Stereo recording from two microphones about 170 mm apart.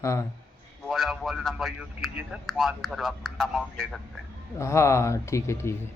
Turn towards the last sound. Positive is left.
turn(degrees=15)  # may be behind; listen again after turning